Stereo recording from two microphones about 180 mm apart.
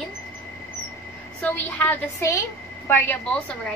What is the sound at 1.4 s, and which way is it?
A woman's voice, 10° left (ahead or behind).